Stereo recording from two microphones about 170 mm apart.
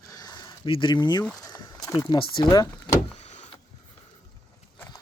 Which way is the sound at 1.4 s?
25° left (ahead or behind).